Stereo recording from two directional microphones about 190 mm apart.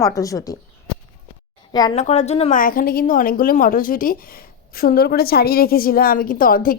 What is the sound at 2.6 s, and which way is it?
A woman's voice, 50° left (ahead or behind).